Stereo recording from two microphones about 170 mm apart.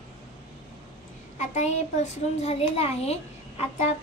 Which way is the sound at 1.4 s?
45° left (ahead or behind).